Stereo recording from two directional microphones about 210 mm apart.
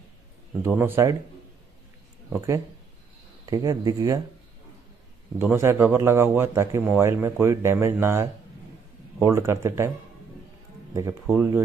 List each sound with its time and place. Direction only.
0.6 s a man's voice: 10° right (ahead or behind)
2.2 s a man's voice: 10° right (ahead or behind)
5.4 s a man's voice: 10° right (ahead or behind)
10.9 s a man's voice: 15° right (ahead or behind)